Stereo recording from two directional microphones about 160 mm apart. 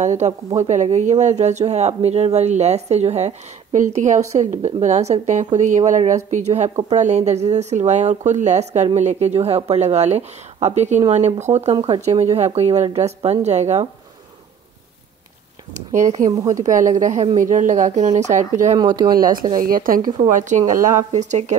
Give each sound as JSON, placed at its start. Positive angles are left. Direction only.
{"t": 0.0, "sound": "speech", "side_deg": -45}
{"t": 15.9, "sound": "speech", "side_deg": -50}
{"t": 18.8, "sound": "speech", "side_deg": -25}
{"t": 19.1, "sound": "a woman's voice", "side_deg": -60}